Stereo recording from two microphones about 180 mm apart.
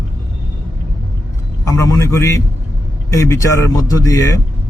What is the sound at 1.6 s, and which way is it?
A man's voice, 20° left (ahead or behind).